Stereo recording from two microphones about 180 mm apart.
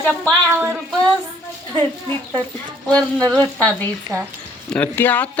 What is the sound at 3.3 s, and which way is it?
Speech, 10° left (ahead or behind).